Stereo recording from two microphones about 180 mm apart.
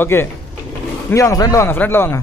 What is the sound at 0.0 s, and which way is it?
Speech, 10° left (ahead or behind).